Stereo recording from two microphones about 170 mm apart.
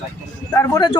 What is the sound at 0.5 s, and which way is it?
Speech, 20° left (ahead or behind).